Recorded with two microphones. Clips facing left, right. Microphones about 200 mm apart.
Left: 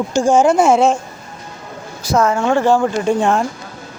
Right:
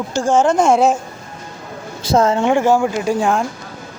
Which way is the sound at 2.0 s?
25° right (ahead or behind).